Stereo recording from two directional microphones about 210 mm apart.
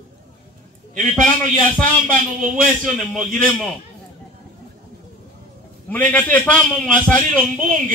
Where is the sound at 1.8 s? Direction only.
40° right (ahead or behind).